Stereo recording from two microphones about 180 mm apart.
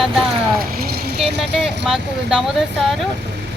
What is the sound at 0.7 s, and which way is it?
Vehicle, 60° right (ahead or behind).